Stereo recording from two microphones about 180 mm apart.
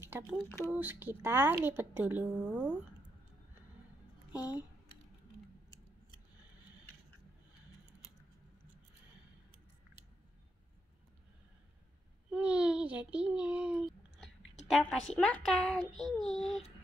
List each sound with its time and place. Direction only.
0.0 s speech: 10° right (ahead or behind)
12.3 s a child's voice: 5° right (ahead or behind)